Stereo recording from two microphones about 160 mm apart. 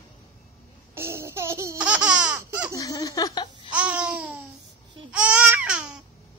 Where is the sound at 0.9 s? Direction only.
15° right (ahead or behind).